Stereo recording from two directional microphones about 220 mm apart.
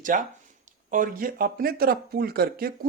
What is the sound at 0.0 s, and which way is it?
Speech, 35° right (ahead or behind).